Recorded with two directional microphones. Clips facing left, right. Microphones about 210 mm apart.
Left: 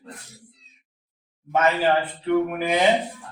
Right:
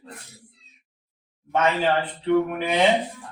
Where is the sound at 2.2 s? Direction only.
5° left (ahead or behind).